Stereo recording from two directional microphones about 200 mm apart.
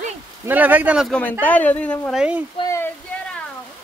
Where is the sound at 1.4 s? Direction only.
10° left (ahead or behind).